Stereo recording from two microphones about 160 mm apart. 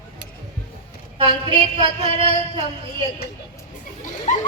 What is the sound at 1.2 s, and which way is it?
Speech, 35° right (ahead or behind).